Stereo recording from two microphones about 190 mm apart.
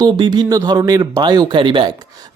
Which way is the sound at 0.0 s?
20° right (ahead or behind).